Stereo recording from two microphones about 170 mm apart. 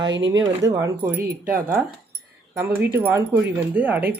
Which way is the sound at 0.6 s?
20° right (ahead or behind).